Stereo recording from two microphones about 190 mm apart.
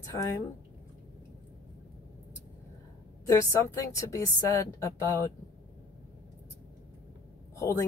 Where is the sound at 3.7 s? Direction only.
15° left (ahead or behind).